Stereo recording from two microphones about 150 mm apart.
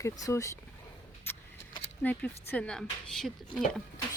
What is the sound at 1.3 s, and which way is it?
Vehicle, 15° left (ahead or behind).